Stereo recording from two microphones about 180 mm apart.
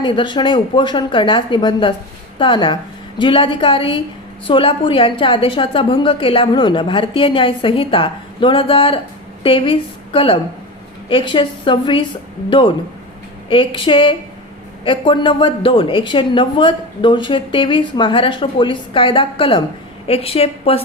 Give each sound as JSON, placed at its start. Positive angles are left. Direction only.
{"t": 0.0, "sound": "a woman's voice", "side_deg": 25}